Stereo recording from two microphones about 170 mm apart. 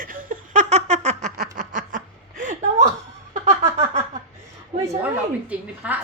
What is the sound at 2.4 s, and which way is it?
Chuckle, 45° right (ahead or behind).